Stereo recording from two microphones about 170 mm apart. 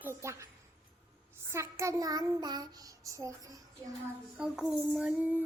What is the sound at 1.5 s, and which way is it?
Child singing, 15° right (ahead or behind).